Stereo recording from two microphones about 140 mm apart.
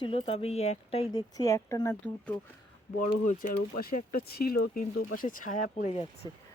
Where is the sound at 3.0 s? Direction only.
75° left (ahead or behind).